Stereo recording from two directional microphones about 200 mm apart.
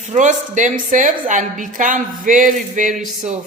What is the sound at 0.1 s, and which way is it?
A woman's voice, 35° right (ahead or behind).